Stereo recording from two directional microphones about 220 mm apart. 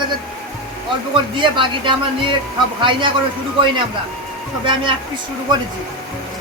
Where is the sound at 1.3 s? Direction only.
20° right (ahead or behind).